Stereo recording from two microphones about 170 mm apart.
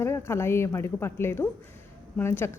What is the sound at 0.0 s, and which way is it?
A woman's voice, 15° left (ahead or behind).